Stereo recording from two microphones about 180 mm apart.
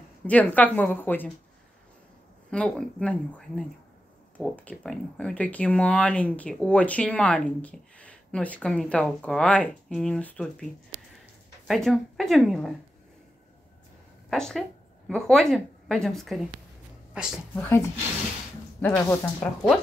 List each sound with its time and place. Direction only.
0.3 s speech: 10° left (ahead or behind)
2.5 s speech: 5° left (ahead or behind)
10.9 s a sound: 35° right (ahead or behind)
11.6 s a woman's voice: centre (ahead or behind)
14.3 s a woman's voice: 5° left (ahead or behind)
17.6 s speech: 10° left (ahead or behind)